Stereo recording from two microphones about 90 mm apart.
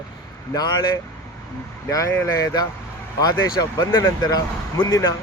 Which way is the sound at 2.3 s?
40° left (ahead or behind).